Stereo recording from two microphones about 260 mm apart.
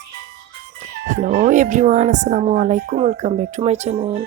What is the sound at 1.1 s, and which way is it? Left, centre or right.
Speech, right.